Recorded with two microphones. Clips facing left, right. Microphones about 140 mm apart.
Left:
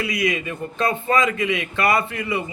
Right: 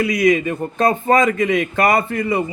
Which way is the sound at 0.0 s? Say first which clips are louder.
Right 8 dB; 45° right (ahead or behind).